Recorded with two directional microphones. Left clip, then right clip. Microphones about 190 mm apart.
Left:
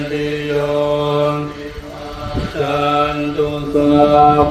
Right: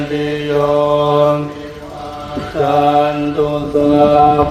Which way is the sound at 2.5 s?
40° right (ahead or behind).